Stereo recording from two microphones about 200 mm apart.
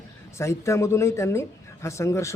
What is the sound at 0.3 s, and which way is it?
Speech, 15° left (ahead or behind).